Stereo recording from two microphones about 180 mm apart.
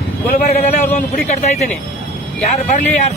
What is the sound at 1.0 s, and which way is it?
A man's voice, 40° left (ahead or behind).